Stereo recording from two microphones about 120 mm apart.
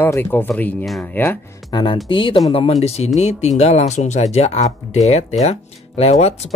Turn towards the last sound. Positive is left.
turn(degrees=65)  # may be behind; listen again after turning